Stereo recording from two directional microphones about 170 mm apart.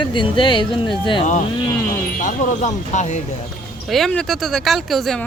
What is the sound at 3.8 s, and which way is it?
Speech, centre (ahead or behind).